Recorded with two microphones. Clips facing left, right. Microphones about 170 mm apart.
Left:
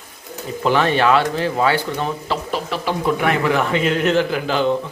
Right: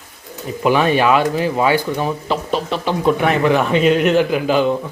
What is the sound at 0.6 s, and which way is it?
A man's voice, 10° right (ahead or behind).